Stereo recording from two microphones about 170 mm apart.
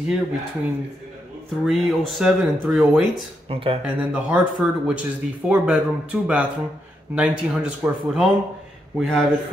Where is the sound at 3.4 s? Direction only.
30° right (ahead or behind).